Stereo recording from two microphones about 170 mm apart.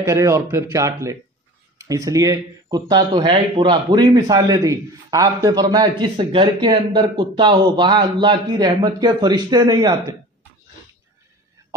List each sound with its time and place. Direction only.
0.0 s speech: 15° right (ahead or behind)